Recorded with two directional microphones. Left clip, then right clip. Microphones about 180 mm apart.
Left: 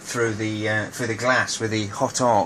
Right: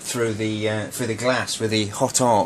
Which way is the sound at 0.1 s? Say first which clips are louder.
Even; 45° right (ahead or behind).